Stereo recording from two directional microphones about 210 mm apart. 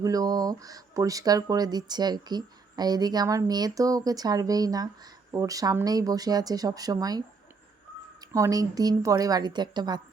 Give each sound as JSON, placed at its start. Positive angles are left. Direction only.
{"t": 0.0, "sound": "speech", "side_deg": -15}